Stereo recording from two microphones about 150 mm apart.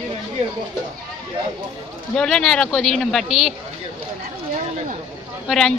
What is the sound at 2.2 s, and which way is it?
Speech, 5° left (ahead or behind).